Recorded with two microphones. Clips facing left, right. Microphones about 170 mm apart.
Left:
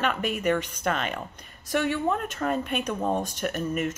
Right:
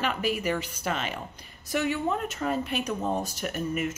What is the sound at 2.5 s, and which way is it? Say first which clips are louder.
Speech: left 2 dB; 55° left (ahead or behind).